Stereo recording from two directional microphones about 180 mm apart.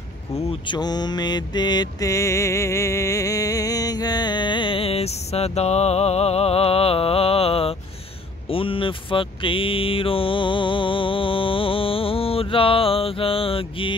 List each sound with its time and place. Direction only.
0.4 s mantra: 30° left (ahead or behind)